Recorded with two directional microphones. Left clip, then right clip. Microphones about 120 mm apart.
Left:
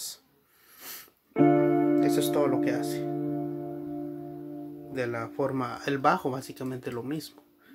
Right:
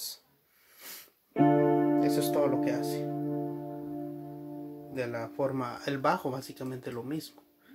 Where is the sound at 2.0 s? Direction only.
25° left (ahead or behind).